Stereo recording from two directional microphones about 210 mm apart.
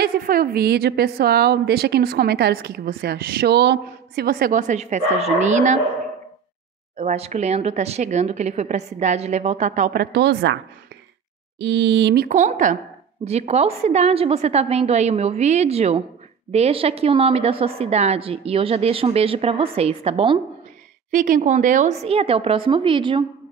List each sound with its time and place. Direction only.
0.0 s a woman's voice: 45° right (ahead or behind)
7.0 s speech: 30° right (ahead or behind); by 10.6 s 55° right (ahead or behind)
11.6 s speech: 55° right (ahead or behind)
12.3 s a woman's voice: 35° right (ahead or behind)
21.1 s a woman's voice: 40° right (ahead or behind); by 23.2 s 25° right (ahead or behind)